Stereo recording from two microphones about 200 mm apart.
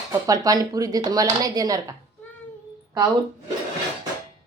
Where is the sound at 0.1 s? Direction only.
15° right (ahead or behind).